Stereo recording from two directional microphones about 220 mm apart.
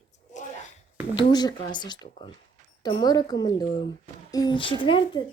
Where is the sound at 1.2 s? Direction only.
20° left (ahead or behind).